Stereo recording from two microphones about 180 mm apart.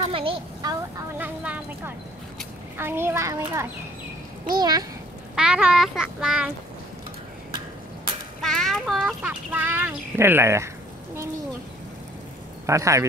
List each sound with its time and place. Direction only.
0.1 s speech: 30° right (ahead or behind)
1.1 s a child's voice: 10° right (ahead or behind)
2.8 s a child's voice: 10° right (ahead or behind)
5.3 s a child's voice: 5° right (ahead or behind)
8.4 s a child's voice: centre (ahead or behind); by 10.7 s 15° right (ahead or behind)
12.6 s a child's voice: 15° right (ahead or behind)